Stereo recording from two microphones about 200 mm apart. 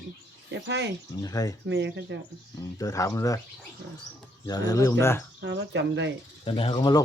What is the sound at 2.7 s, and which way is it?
Speech, 15° left (ahead or behind).